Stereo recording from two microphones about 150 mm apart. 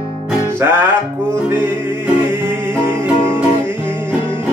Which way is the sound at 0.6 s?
15° right (ahead or behind).